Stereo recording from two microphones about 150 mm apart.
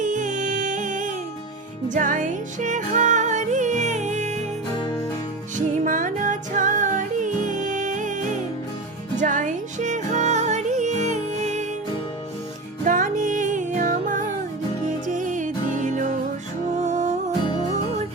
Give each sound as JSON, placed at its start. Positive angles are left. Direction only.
{"t": 0.0, "sound": "music", "side_deg": -55}
{"t": 5.5, "sound": "music", "side_deg": -60}
{"t": 12.8, "sound": "music", "side_deg": -60}